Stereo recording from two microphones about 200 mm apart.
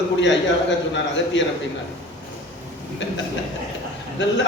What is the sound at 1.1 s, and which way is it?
Speech, 65° left (ahead or behind).